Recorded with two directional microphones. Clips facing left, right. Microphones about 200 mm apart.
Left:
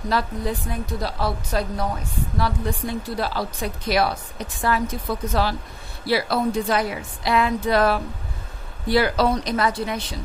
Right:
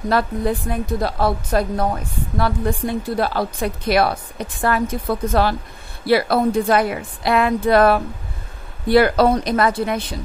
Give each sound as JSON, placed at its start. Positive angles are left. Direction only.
{"t": 0.1, "sound": "a woman's voice", "side_deg": -55}